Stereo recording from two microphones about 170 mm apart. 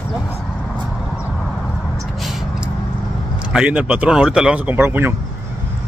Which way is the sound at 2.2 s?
Centre (ahead or behind).